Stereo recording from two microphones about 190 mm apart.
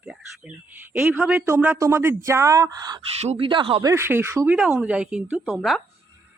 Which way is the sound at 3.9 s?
10° right (ahead or behind).